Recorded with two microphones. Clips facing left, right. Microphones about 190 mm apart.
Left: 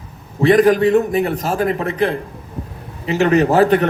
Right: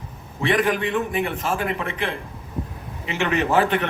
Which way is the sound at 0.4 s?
40° left (ahead or behind).